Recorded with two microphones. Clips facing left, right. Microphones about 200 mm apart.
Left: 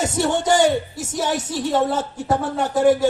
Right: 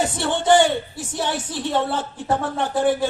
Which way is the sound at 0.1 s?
40° left (ahead or behind).